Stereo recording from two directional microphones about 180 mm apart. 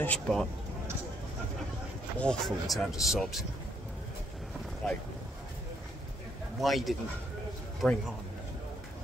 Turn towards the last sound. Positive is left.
turn(degrees=0)  # may be behind; listen again after turning